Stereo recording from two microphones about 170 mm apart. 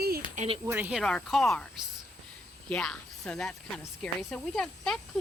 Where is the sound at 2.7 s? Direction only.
5° left (ahead or behind).